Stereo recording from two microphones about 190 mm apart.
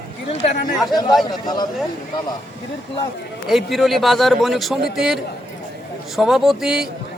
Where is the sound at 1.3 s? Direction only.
20° left (ahead or behind).